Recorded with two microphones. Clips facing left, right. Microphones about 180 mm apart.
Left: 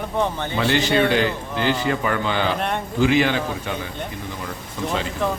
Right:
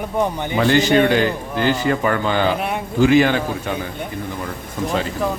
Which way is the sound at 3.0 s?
45° right (ahead or behind).